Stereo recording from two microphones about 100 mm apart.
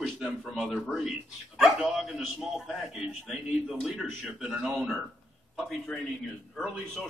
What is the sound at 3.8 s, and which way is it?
A man's voice, 5° right (ahead or behind).